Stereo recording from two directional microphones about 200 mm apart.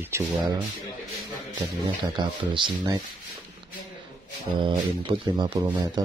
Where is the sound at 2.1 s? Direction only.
25° right (ahead or behind).